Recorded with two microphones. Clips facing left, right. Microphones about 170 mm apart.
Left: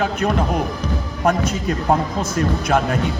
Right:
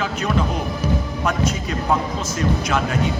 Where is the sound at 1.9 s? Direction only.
55° left (ahead or behind).